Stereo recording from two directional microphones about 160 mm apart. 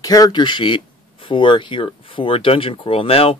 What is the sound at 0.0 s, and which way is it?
Speech, 25° left (ahead or behind).